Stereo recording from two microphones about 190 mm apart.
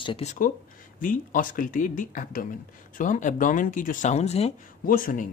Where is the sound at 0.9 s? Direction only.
45° left (ahead or behind).